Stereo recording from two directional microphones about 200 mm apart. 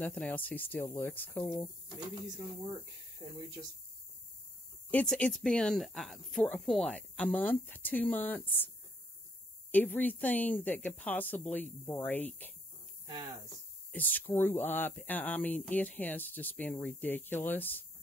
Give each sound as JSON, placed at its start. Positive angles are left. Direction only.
{"t": 0.0, "sound": "speech", "side_deg": 5}
{"t": 4.9, "sound": "speech", "side_deg": 5}
{"t": 9.7, "sound": "speech", "side_deg": 10}
{"t": 13.0, "sound": "speech", "side_deg": -20}
{"t": 13.9, "sound": "speech", "side_deg": 10}